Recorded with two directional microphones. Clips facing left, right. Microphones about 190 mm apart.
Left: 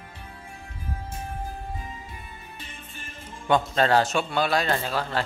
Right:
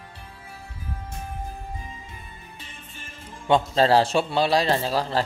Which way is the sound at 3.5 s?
30° right (ahead or behind).